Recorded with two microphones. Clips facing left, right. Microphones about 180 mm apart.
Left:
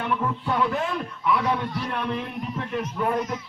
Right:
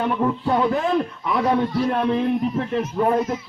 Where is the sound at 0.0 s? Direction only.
40° right (ahead or behind).